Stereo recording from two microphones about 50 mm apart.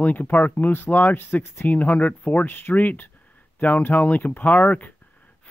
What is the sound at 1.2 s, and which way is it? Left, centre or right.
Speech, left.